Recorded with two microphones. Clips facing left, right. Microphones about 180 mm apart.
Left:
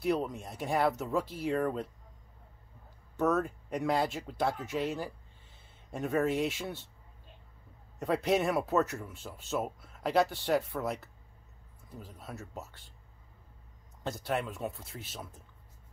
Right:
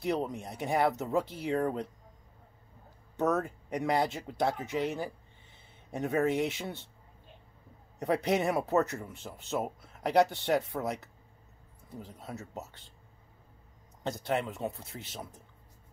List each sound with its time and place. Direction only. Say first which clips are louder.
0.0 s speech: left 1 dB; 20° right (ahead or behind)
3.2 s speech: even; 20° right (ahead or behind)
8.0 s speech: even; 15° right (ahead or behind)
14.0 s speech: right 2 dB; 20° right (ahead or behind)